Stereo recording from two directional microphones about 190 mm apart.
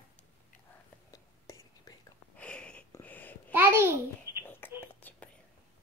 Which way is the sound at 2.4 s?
5° left (ahead or behind).